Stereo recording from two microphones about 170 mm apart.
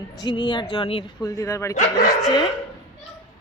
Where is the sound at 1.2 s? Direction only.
20° left (ahead or behind).